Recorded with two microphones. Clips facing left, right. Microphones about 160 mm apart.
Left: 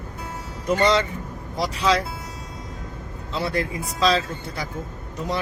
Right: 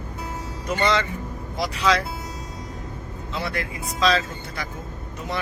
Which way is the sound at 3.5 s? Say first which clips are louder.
Left 4 dB; 30° left (ahead or behind).